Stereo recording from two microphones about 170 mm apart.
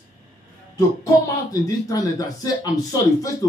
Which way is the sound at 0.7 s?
20° left (ahead or behind).